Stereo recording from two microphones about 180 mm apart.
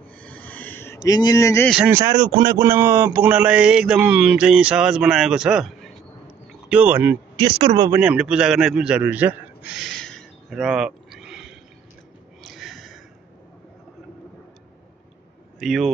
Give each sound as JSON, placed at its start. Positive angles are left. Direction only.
{"t": 0.2, "sound": "a sound", "side_deg": 10}
{"t": 1.9, "sound": "a man's voice", "side_deg": -15}
{"t": 6.7, "sound": "speech", "side_deg": -10}
{"t": 7.3, "sound": "speech", "side_deg": -30}
{"t": 8.0, "sound": "a man's voice", "side_deg": -5}
{"t": 12.4, "sound": "a sound", "side_deg": 0}
{"t": 15.6, "sound": "a man's voice", "side_deg": 0}